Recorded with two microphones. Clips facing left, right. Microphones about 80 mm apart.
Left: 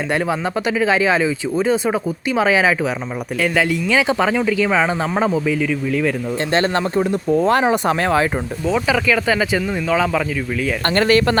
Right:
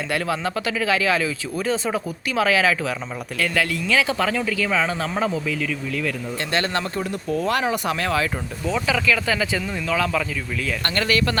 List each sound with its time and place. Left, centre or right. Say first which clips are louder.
0.1 s speech: left 3 dB; left
6.5 s speech: left 6 dB; left
8.6 s speech: left 4 dB; centre
10.8 s speech: left 7 dB; left